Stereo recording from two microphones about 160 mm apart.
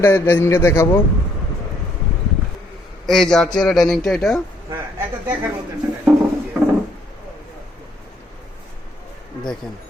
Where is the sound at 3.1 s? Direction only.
5° left (ahead or behind).